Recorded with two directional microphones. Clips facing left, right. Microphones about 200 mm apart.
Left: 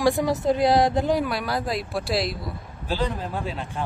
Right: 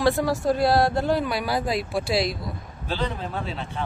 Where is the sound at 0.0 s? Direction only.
15° left (ahead or behind).